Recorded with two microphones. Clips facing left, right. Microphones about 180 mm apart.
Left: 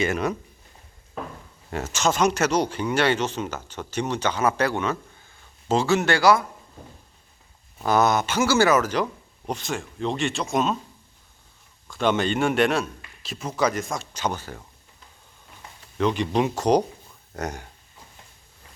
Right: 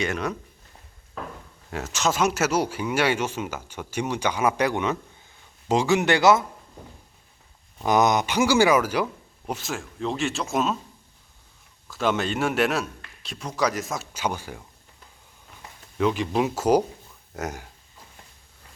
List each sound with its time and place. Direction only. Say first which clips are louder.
0.0 s speech: left 3 dB; 5° left (ahead or behind)
1.7 s speech: left 2 dB; centre (ahead or behind); by 6.4 s 20° right (ahead or behind)
7.9 s speech: even; 15° right (ahead or behind); by 10.8 s centre (ahead or behind)
11.9 s speech: left 2 dB; centre (ahead or behind)
16.0 s speech: left 1 dB; 5° right (ahead or behind)